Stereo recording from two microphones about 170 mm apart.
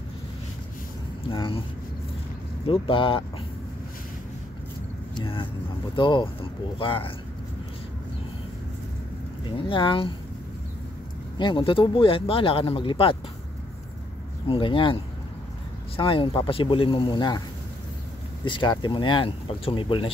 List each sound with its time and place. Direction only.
1.3 s speech: 30° left (ahead or behind)
2.6 s speech: 30° left (ahead or behind)
5.1 s vehicle: 30° left (ahead or behind)
5.9 s speech: 30° left (ahead or behind)
9.6 s speech: 30° left (ahead or behind)
11.3 s speech: 30° left (ahead or behind)
14.5 s speech: 30° left (ahead or behind)
16.0 s speech: 30° left (ahead or behind)
18.4 s speech: 30° left (ahead or behind)